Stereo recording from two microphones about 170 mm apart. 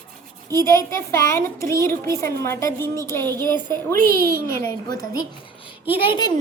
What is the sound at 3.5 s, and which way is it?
Speech, 25° right (ahead or behind).